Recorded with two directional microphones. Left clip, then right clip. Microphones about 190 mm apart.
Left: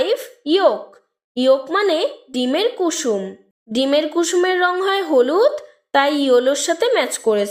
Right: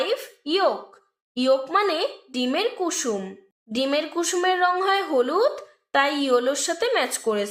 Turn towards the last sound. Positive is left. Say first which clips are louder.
# left 6 dB
turn(degrees=35)  # may be behind; listen again after turning